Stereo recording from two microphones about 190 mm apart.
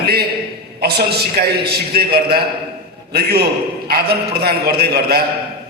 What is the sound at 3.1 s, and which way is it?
A man's voice, 55° right (ahead or behind).